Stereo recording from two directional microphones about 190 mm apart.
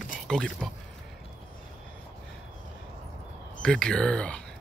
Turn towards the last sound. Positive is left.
turn(degrees=5)  # may be behind; listen again after turning